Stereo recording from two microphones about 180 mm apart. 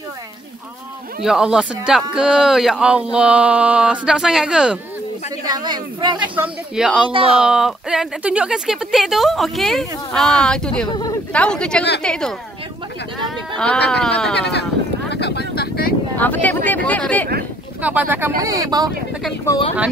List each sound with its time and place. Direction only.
1.2 s speech: 5° right (ahead or behind)
5.4 s a woman's voice: 20° right (ahead or behind)
6.1 s speech: 10° right (ahead or behind)
7.1 s speech: 30° right (ahead or behind)
7.3 s speech: 5° right (ahead or behind)
10.9 s a sound: 20° left (ahead or behind)
11.3 s speech: 5° left (ahead or behind)
14.5 s a sound: 70° left (ahead or behind)
16.2 s speech: 10° left (ahead or behind)
17.8 s speech: 10° right (ahead or behind)